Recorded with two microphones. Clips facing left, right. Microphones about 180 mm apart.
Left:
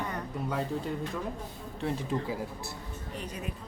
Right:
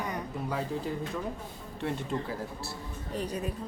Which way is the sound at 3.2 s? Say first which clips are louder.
Right 6 dB; 35° right (ahead or behind).